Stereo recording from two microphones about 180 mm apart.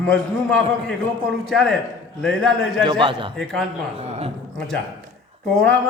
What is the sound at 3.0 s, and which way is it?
Speech, 25° right (ahead or behind).